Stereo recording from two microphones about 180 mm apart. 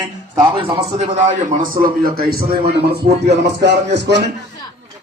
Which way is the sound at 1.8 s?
55° right (ahead or behind).